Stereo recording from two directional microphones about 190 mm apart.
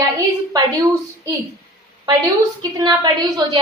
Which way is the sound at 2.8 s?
20° right (ahead or behind).